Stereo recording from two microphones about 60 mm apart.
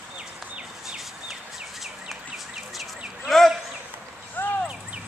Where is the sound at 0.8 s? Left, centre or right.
Centre.